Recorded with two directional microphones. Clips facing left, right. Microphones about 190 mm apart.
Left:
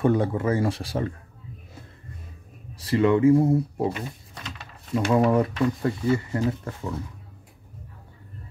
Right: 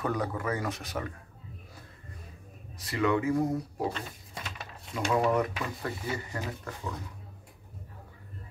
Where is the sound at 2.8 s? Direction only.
30° left (ahead or behind).